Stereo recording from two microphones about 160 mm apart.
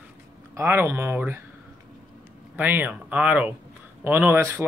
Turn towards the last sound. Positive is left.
turn(degrees=-15)  # may be behind; listen again after turning